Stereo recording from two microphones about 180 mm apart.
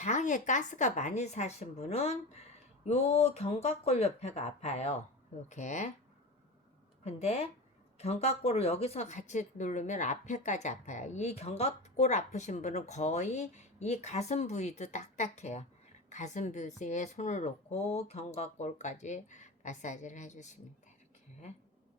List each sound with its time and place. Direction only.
0.0 s a woman's voice: 45° left (ahead or behind)
7.0 s a woman's voice: 35° left (ahead or behind)